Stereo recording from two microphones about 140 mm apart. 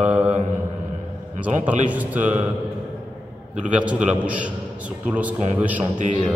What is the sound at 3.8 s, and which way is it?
A man's voice, 10° right (ahead or behind).